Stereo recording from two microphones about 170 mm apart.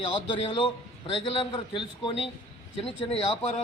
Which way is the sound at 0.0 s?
30° left (ahead or behind).